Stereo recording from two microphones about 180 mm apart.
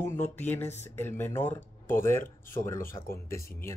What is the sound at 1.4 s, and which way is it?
Speech, 40° left (ahead or behind).